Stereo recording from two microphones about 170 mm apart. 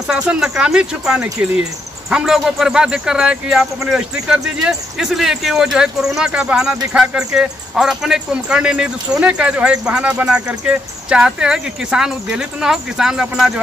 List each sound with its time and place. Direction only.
0.1 s speech: 5° right (ahead or behind)